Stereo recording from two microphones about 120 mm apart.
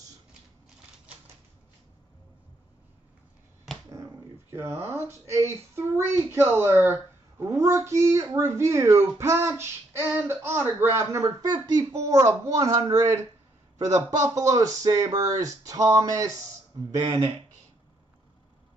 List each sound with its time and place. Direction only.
3.9 s dog: 25° right (ahead or behind)
5.0 s speech: 25° right (ahead or behind)
14.2 s speech: 25° right (ahead or behind)
17.0 s speech: 45° right (ahead or behind)